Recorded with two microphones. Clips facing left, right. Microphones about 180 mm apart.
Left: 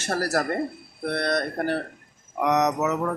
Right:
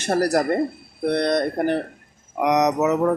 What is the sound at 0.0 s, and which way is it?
Speech, 15° right (ahead or behind).